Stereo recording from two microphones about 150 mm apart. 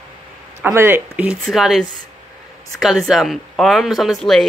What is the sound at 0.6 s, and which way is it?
Speech, 15° right (ahead or behind).